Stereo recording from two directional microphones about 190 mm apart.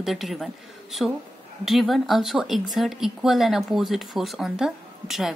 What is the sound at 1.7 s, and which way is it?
Speech, centre (ahead or behind).